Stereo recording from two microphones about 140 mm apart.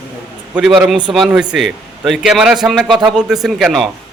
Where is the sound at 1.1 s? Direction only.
5° right (ahead or behind).